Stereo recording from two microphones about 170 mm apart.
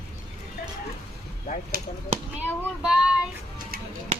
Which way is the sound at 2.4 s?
5° right (ahead or behind).